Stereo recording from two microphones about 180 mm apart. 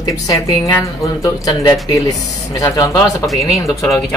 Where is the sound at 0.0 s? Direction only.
20° left (ahead or behind).